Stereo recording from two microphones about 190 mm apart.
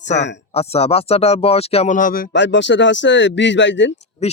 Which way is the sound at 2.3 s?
70° left (ahead or behind).